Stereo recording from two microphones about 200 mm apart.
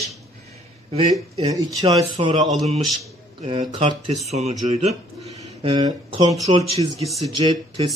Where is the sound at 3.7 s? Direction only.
25° right (ahead or behind).